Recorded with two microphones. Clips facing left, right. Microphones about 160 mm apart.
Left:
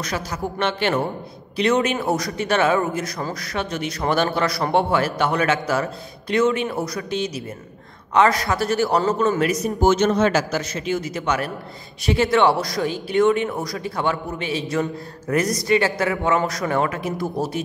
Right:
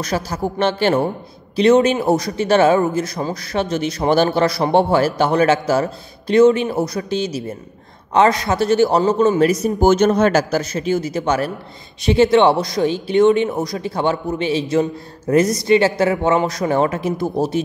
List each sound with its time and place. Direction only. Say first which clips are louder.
0.0 s a man's voice: right 5 dB; 35° right (ahead or behind)
9.4 s a man's voice: right 5 dB; 35° right (ahead or behind)